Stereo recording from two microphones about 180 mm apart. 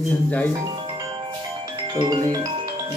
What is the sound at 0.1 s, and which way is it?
Speech, 10° left (ahead or behind).